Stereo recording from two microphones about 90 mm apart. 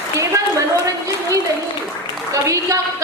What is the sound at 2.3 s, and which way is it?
Speech, 35° right (ahead or behind).